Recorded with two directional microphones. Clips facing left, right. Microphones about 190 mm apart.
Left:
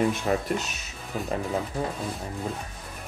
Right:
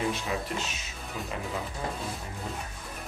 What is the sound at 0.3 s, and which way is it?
Speech, 50° left (ahead or behind).